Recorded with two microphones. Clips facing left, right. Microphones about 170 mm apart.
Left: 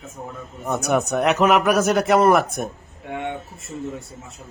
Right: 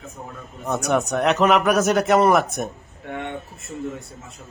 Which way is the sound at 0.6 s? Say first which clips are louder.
Even; 10° left (ahead or behind).